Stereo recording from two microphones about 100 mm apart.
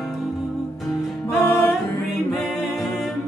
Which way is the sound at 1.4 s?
25° left (ahead or behind).